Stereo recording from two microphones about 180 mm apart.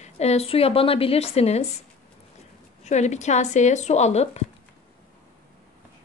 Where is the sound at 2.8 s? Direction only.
40° left (ahead or behind).